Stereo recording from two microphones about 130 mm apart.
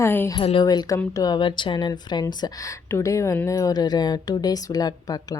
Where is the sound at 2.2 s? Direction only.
25° left (ahead or behind).